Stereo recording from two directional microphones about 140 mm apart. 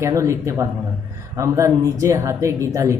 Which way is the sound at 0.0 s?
20° right (ahead or behind).